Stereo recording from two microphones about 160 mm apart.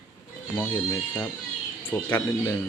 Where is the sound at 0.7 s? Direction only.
20° left (ahead or behind).